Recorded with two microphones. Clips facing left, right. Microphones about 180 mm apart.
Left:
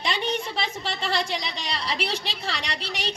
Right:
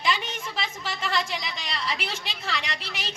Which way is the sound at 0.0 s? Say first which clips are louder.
Left 2 dB; 35° left (ahead or behind).